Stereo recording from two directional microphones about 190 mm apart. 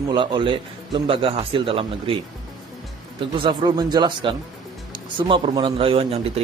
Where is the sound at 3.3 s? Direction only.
25° right (ahead or behind).